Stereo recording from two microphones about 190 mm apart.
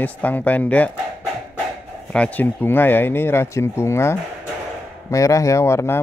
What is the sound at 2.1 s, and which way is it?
Speech, 10° left (ahead or behind).